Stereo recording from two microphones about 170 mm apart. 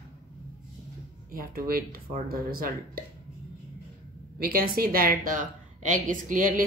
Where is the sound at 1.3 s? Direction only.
60° right (ahead or behind).